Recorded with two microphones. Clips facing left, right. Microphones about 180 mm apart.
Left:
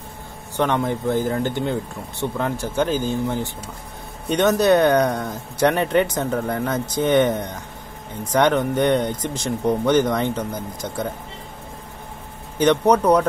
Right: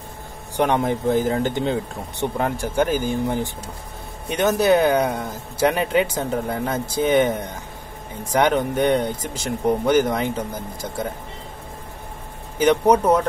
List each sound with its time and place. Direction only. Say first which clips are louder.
0.6 s speech: right 1 dB; 15° right (ahead or behind)
12.5 s speech: even; 10° right (ahead or behind)